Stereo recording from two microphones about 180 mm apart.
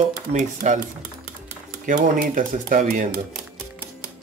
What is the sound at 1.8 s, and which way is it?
Speech, 45° right (ahead or behind).